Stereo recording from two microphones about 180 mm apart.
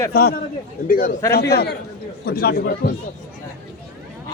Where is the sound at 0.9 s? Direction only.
55° left (ahead or behind).